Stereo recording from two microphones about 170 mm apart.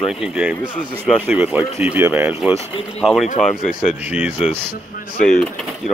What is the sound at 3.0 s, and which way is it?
Speech, 5° left (ahead or behind).